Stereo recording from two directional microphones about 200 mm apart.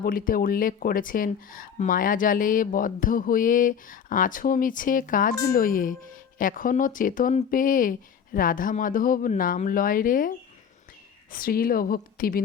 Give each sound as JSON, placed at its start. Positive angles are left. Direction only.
{"t": 0.0, "sound": "speech", "side_deg": 45}